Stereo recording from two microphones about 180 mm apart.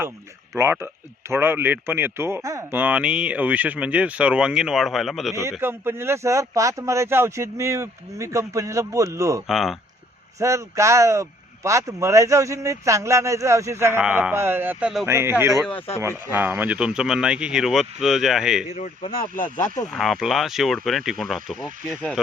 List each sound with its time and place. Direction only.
0.5 s speech: 15° right (ahead or behind)
5.3 s speech: 15° right (ahead or behind)
9.5 s speech: centre (ahead or behind)
10.4 s speech: 15° right (ahead or behind)
15.5 s speech: 5° left (ahead or behind)
16.0 s speech: 10° right (ahead or behind)
18.7 s speech: 35° left (ahead or behind)
19.4 s speech: 45° left (ahead or behind)
19.9 s speech: centre (ahead or behind)